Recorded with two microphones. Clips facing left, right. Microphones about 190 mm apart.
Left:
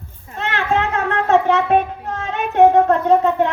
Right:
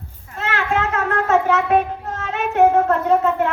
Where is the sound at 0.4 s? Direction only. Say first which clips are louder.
Left 2 dB; 30° left (ahead or behind).